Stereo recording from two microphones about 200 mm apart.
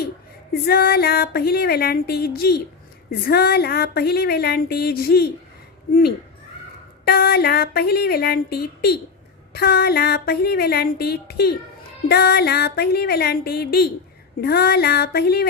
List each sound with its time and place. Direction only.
0.6 s speech: 50° left (ahead or behind)
7.0 s speech: 50° left (ahead or behind)